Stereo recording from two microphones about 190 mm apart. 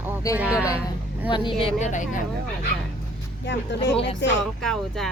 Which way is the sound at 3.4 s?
65° left (ahead or behind).